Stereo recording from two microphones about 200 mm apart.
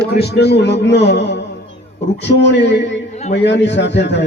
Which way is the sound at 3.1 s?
35° left (ahead or behind).